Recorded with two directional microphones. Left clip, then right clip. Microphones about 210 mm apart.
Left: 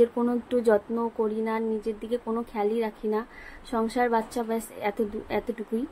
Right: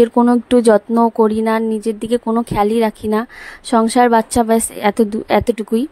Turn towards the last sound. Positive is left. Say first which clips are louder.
# right 15 dB
turn(degrees=-50)  # may be behind; listen again after turning